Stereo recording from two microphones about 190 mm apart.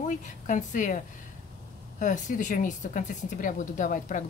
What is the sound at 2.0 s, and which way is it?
Speech, 40° left (ahead or behind).